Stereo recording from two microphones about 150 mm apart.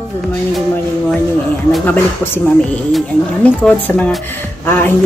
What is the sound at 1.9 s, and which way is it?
A woman's voice, 15° left (ahead or behind).